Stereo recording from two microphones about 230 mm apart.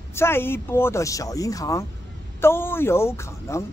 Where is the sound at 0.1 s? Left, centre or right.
Centre.